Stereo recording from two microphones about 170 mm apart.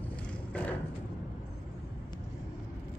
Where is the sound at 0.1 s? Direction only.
10° left (ahead or behind).